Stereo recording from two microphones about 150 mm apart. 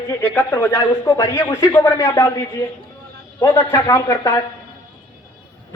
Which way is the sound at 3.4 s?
20° left (ahead or behind).